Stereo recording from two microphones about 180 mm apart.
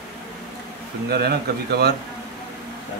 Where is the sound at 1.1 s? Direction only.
60° right (ahead or behind).